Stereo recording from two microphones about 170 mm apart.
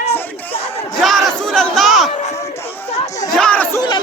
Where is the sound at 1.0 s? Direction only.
Centre (ahead or behind).